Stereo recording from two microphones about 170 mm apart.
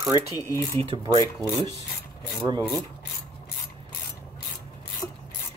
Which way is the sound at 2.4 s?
25° right (ahead or behind).